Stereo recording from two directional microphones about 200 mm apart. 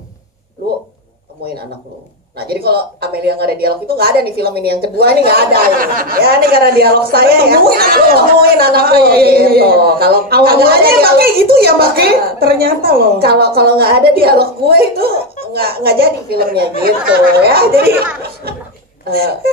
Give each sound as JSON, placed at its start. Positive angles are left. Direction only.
{"t": 2.3, "sound": "a woman's voice", "side_deg": -50}
{"t": 19.0, "sound": "a woman's voice", "side_deg": -50}